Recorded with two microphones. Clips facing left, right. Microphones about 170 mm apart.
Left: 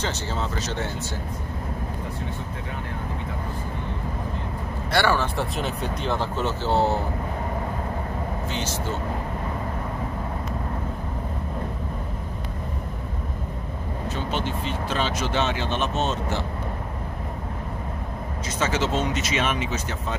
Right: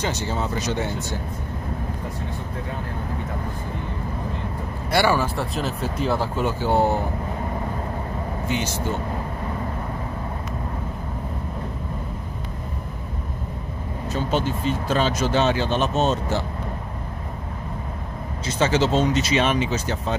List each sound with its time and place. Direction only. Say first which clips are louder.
0.0 s speech: right 3 dB; 15° right (ahead or behind)
4.9 s speech: right 2 dB; 10° right (ahead or behind)
8.5 s speech: right 6 dB; 15° right (ahead or behind)
14.1 s speech: right 6 dB; 40° right (ahead or behind)
18.6 s speech: right 5 dB; 30° right (ahead or behind)